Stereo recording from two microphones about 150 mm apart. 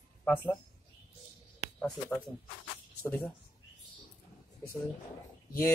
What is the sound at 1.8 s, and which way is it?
Speech, 5° left (ahead or behind).